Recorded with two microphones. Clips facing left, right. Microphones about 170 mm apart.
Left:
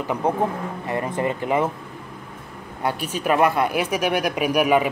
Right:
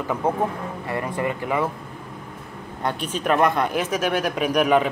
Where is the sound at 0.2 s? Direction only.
20° left (ahead or behind).